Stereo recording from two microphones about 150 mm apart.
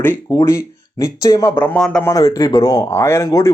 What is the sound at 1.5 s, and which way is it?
Speech, 10° left (ahead or behind).